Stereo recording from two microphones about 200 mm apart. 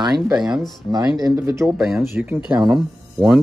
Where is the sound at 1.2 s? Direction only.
15° right (ahead or behind).